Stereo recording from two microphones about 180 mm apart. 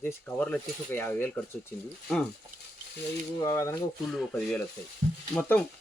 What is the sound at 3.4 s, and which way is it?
Speech, 15° left (ahead or behind).